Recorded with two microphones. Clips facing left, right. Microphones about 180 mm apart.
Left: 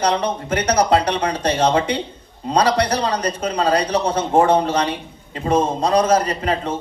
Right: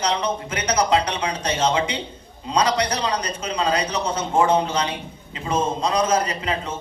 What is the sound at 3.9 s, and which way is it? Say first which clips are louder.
A man's voice: left 5 dB; 60° left (ahead or behind).